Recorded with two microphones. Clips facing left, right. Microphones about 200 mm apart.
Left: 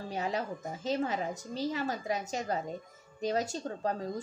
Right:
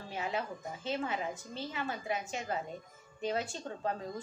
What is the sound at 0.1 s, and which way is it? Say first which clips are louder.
A woman's voice: left 2 dB; 40° left (ahead or behind).